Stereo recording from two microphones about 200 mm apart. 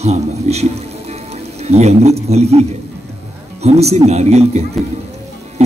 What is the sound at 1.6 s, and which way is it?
A man's voice, 30° right (ahead or behind).